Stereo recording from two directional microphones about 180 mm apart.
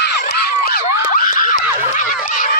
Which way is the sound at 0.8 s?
50° left (ahead or behind).